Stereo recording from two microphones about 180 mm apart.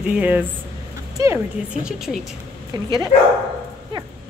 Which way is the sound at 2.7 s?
25° right (ahead or behind).